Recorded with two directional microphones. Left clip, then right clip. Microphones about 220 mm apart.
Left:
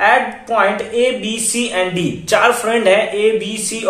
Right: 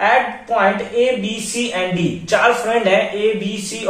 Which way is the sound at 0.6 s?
50° left (ahead or behind).